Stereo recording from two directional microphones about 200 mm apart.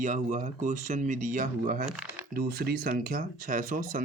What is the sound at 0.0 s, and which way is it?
Speech, 40° right (ahead or behind).